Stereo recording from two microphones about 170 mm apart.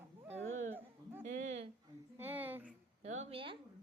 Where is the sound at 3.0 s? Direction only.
45° right (ahead or behind).